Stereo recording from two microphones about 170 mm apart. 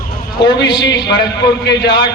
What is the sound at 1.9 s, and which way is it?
Speech, 25° left (ahead or behind).